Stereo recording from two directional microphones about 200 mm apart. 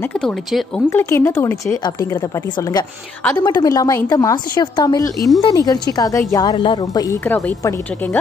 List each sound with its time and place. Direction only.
0.0 s a woman's voice: 5° left (ahead or behind)